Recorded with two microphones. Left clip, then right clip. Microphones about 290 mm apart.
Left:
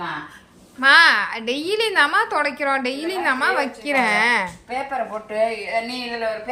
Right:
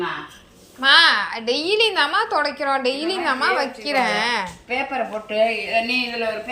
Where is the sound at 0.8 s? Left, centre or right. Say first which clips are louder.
Left 1 dB; centre.